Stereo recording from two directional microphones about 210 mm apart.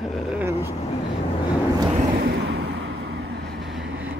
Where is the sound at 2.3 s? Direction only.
55° right (ahead or behind).